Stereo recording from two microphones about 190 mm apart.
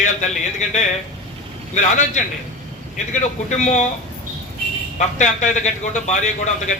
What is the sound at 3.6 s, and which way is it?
Speech, 40° left (ahead or behind).